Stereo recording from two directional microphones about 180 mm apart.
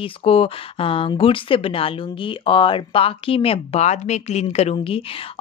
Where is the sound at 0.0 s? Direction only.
30° left (ahead or behind).